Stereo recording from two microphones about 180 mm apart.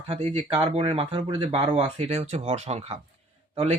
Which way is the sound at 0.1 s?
30° right (ahead or behind).